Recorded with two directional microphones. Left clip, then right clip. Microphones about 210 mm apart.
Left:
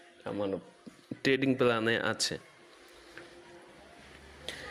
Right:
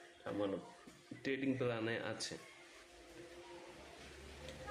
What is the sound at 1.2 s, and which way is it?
Speech, 45° left (ahead or behind).